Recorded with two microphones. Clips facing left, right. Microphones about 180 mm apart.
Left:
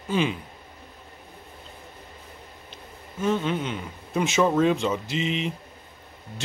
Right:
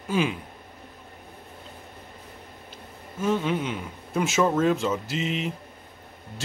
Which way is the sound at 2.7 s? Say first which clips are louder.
Right 1 dB; 5° right (ahead or behind).